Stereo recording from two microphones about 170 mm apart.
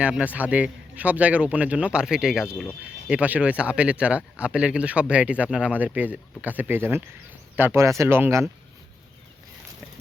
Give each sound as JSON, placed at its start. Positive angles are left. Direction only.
{"t": 0.0, "sound": "speech", "side_deg": -5}